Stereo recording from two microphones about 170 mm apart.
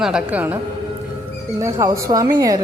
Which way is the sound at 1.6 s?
20° right (ahead or behind).